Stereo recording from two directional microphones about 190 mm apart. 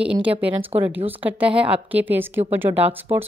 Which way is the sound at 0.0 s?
5° right (ahead or behind).